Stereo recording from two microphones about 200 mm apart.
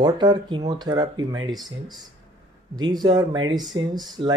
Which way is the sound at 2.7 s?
20° right (ahead or behind).